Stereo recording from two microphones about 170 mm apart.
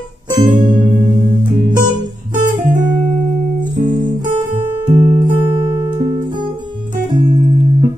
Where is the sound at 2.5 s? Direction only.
50° right (ahead or behind).